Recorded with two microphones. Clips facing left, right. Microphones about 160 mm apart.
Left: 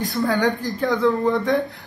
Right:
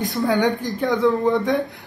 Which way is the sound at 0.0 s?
20° right (ahead or behind).